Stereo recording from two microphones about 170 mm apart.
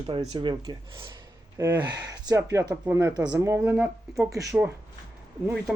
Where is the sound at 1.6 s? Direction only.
15° right (ahead or behind).